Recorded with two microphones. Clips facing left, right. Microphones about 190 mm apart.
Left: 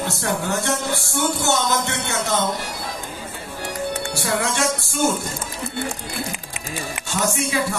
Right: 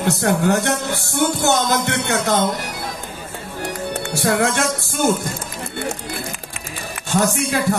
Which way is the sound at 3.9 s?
55° right (ahead or behind).